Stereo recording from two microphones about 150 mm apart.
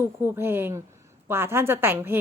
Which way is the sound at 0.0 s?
15° right (ahead or behind).